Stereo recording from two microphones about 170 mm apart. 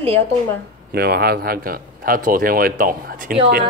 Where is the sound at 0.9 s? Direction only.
65° right (ahead or behind).